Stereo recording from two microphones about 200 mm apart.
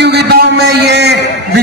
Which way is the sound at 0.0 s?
55° right (ahead or behind).